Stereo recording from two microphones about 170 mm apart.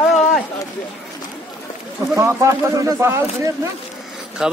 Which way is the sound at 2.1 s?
15° right (ahead or behind).